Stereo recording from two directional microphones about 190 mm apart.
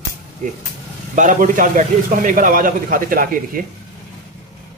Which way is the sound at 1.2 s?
40° right (ahead or behind).